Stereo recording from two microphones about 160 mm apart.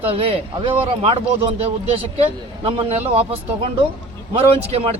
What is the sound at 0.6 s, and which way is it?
Speech, 35° right (ahead or behind).